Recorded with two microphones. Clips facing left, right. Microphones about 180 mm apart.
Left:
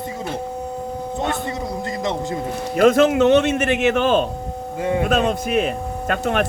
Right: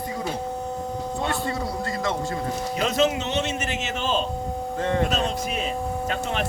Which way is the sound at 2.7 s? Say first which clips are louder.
Left 10 dB; 50° left (ahead or behind).